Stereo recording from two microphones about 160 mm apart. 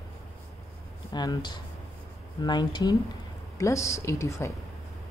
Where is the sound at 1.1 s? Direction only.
25° left (ahead or behind).